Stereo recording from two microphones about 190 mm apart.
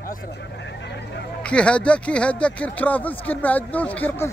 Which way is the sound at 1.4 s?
5° left (ahead or behind).